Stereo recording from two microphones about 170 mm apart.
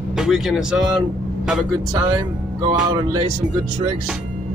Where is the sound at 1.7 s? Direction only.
25° right (ahead or behind).